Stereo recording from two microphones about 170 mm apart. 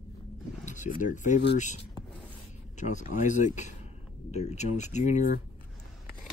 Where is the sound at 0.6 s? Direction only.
45° left (ahead or behind).